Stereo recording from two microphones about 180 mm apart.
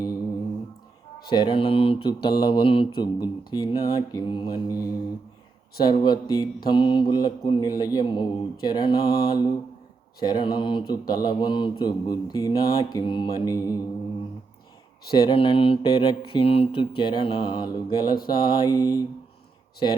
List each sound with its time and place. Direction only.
1.3 s mantra: 25° left (ahead or behind)
15.1 s mantra: 25° left (ahead or behind)